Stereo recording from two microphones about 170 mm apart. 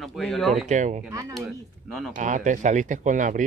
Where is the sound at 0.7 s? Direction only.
45° right (ahead or behind).